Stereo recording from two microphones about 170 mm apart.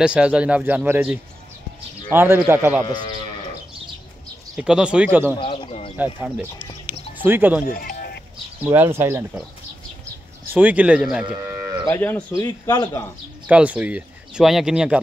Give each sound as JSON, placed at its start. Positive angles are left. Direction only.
{"t": 0.0, "sound": "speech", "side_deg": -5}
{"t": 4.6, "sound": "speech", "side_deg": -5}
{"t": 5.4, "sound": "speech", "side_deg": 30}
{"t": 5.9, "sound": "speech", "side_deg": -10}
{"t": 6.9, "sound": "music", "side_deg": -10}
{"t": 7.6, "sound": "music", "side_deg": 60}
{"t": 8.6, "sound": "speech", "side_deg": -15}
{"t": 10.4, "sound": "speech", "side_deg": -10}
{"t": 11.9, "sound": "speech", "side_deg": 10}
{"t": 13.5, "sound": "speech", "side_deg": -10}